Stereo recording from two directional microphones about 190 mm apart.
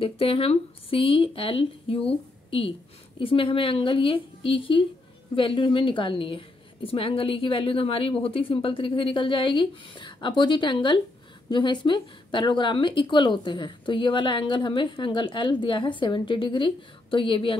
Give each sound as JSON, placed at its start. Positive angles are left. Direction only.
{"t": 0.0, "sound": "a woman's voice", "side_deg": 30}